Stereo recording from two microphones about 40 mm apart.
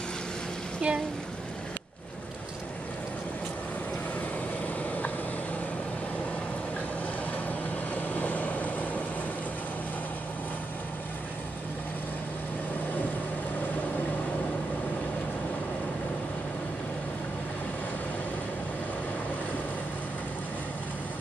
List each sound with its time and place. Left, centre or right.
0.8 s speech: right
7.4 s vehicle: left